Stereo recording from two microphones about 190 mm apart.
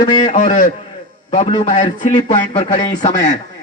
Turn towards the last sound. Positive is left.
turn(degrees=40)  # may be behind; listen again after turning